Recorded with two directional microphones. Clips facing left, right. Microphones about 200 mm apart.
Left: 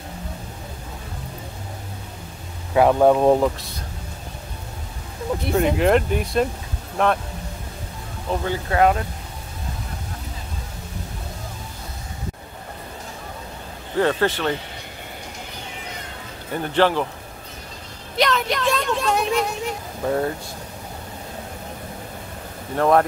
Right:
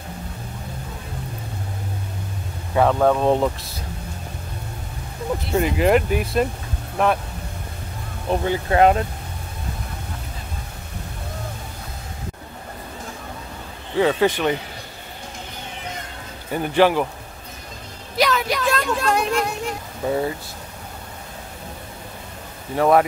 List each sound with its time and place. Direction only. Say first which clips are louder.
2.7 s speech: left 2 dB; 10° left (ahead or behind)
3.3 s speech: left 1 dB; centre (ahead or behind)
5.8 s speech: right 1 dB; 5° right (ahead or behind)
8.3 s speech: right 3 dB; 20° right (ahead or behind)
13.9 s speech: right 2 dB; 10° right (ahead or behind)
16.5 s speech: right 2 dB; 10° right (ahead or behind)
18.1 s speech: right 1 dB; 5° right (ahead or behind)
22.8 s speech: right 1 dB; 5° right (ahead or behind)